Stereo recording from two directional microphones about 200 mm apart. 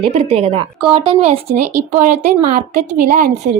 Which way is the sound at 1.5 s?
40° right (ahead or behind).